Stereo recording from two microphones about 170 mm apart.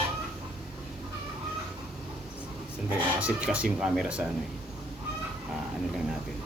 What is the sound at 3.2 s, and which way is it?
Speech, 5° right (ahead or behind).